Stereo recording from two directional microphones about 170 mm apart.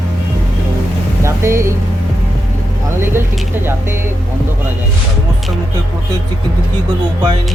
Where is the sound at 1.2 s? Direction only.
15° right (ahead or behind).